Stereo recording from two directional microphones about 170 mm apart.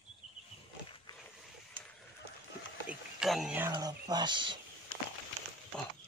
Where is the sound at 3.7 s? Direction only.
25° right (ahead or behind).